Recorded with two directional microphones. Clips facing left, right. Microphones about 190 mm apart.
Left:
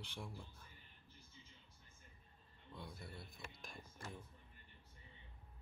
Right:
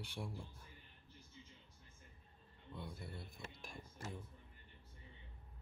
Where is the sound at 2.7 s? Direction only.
5° right (ahead or behind).